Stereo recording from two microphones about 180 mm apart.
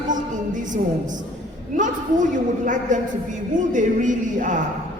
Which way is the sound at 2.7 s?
45° right (ahead or behind).